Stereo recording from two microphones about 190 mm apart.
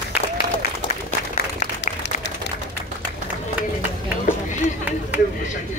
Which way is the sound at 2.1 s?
40° left (ahead or behind).